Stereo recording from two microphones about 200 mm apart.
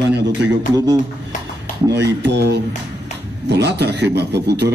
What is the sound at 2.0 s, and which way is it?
A man's voice, 60° right (ahead or behind).